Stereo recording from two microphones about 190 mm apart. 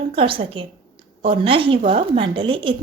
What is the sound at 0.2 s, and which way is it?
A woman's voice, 30° right (ahead or behind).